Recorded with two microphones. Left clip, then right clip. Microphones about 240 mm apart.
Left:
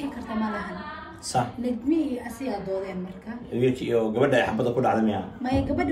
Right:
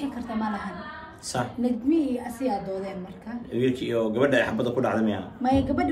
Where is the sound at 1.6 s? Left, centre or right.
Centre.